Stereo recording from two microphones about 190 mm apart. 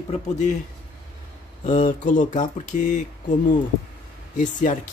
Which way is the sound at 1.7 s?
45° left (ahead or behind).